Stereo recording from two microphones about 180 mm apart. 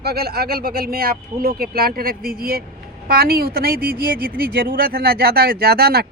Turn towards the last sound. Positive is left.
turn(degrees=-60)  # may be behind; listen again after turning